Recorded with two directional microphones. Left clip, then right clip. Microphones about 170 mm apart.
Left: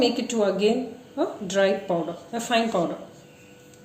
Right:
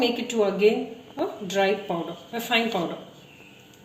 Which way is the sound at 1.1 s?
25° left (ahead or behind).